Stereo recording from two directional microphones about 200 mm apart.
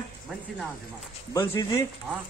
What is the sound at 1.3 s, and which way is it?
Speech, 15° left (ahead or behind).